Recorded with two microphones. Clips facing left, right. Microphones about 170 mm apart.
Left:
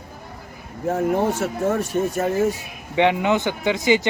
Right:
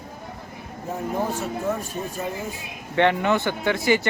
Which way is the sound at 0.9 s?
75° left (ahead or behind).